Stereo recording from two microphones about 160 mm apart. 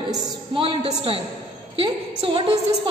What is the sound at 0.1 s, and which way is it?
A woman's voice, 35° right (ahead or behind).